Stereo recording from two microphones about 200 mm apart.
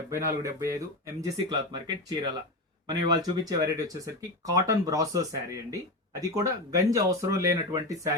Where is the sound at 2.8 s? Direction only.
20° right (ahead or behind).